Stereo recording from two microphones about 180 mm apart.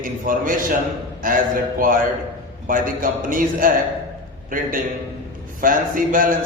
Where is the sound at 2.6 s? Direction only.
50° right (ahead or behind).